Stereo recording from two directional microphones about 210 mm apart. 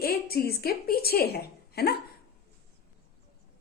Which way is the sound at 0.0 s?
45° left (ahead or behind).